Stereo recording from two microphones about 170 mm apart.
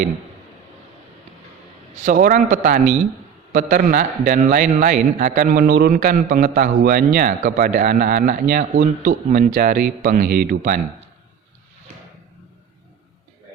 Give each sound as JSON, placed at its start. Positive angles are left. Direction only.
{"t": 2.0, "sound": "a man's voice", "side_deg": -50}